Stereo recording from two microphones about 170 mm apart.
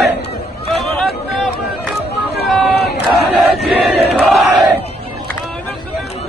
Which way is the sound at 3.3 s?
Centre (ahead or behind).